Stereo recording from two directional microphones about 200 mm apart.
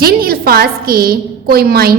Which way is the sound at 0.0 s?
50° right (ahead or behind).